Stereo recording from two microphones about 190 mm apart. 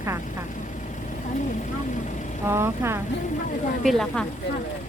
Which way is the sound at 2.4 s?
15° right (ahead or behind).